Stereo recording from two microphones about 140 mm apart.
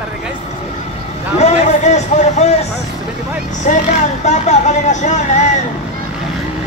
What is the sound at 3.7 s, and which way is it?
Speech, 60° left (ahead or behind).